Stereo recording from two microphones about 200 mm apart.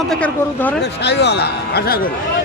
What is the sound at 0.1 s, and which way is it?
Speech, 5° left (ahead or behind).